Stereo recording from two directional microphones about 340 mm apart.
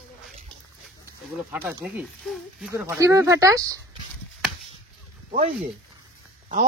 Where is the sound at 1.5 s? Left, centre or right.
Centre.